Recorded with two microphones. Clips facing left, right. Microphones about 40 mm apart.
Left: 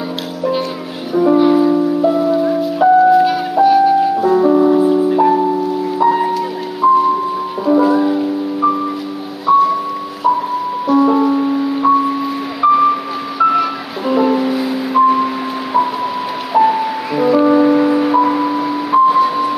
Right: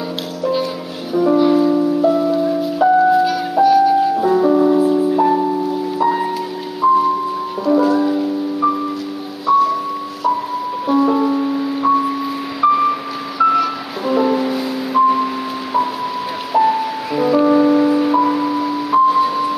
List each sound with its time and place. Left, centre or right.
1.1 s music: centre
2.6 s music: centre
3.6 s music: centre
4.2 s music: centre
11.0 s music: centre
16.5 s music: centre